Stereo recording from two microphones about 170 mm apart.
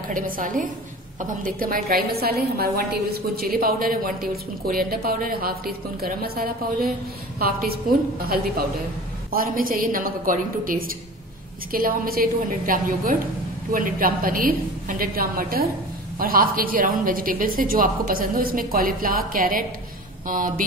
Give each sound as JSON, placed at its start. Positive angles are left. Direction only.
{"t": 0.1, "sound": "a woman's voice", "side_deg": -50}
{"t": 9.3, "sound": "a woman's voice", "side_deg": -60}